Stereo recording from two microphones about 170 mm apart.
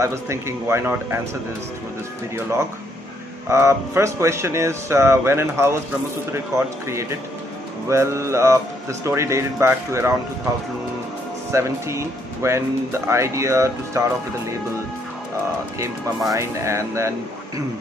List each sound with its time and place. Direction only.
0.0 s speech: 15° right (ahead or behind)
3.4 s speech: 15° right (ahead or behind)
11.5 s speech: 15° right (ahead or behind)
16.3 s speech: 15° right (ahead or behind)